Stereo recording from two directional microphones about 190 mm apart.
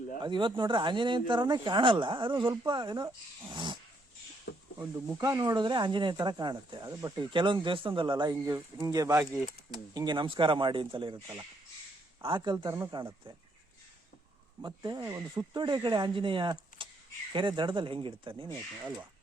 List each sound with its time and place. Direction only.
0.2 s speech: 25° right (ahead or behind)
3.5 s dog: 25° right (ahead or behind)
4.5 s a sound: 75° left (ahead or behind)
4.8 s speech: 20° right (ahead or behind)
14.6 s speech: 25° right (ahead or behind)